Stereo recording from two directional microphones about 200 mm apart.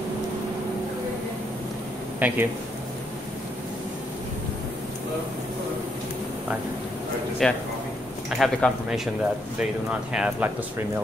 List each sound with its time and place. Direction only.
2.1 s speech: 10° right (ahead or behind)
7.4 s speech: centre (ahead or behind)